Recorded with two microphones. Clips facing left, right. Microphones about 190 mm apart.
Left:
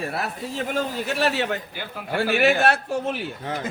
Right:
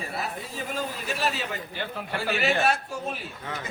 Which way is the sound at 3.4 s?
45° left (ahead or behind).